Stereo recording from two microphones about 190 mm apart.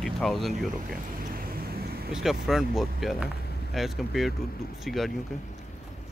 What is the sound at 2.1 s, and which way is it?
Speech, centre (ahead or behind).